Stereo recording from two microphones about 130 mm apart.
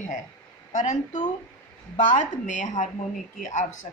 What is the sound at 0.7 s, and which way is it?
A woman's voice, 70° left (ahead or behind).